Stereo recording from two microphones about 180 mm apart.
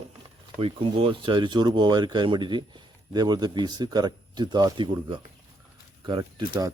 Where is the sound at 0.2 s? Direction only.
30° right (ahead or behind).